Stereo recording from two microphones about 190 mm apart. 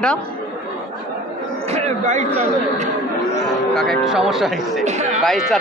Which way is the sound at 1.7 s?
35° right (ahead or behind).